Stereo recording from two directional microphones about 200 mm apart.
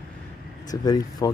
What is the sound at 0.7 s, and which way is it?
Speech, 20° left (ahead or behind).